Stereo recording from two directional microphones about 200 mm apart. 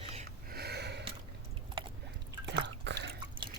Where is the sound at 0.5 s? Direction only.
55° right (ahead or behind).